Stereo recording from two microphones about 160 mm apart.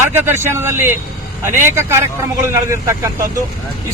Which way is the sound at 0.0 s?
15° right (ahead or behind).